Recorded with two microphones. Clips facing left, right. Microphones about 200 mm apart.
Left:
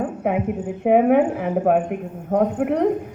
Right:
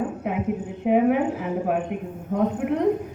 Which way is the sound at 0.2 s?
60° left (ahead or behind).